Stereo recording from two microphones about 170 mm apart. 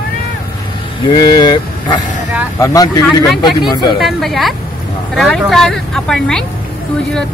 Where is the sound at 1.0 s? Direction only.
25° left (ahead or behind).